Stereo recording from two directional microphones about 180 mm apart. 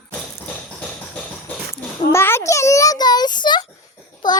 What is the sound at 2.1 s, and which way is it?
A child's voice, 15° left (ahead or behind).